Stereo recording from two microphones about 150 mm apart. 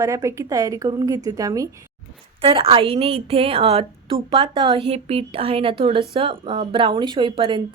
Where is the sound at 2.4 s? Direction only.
40° right (ahead or behind).